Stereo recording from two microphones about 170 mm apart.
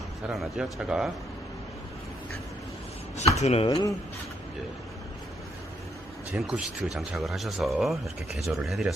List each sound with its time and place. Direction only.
0.3 s speech: 5° right (ahead or behind)
3.3 s speech: 40° left (ahead or behind)
3.7 s speech: 25° left (ahead or behind)
6.3 s speech: 10° right (ahead or behind)